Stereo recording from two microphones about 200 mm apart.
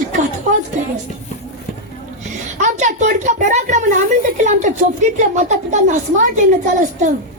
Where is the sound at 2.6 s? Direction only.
35° right (ahead or behind).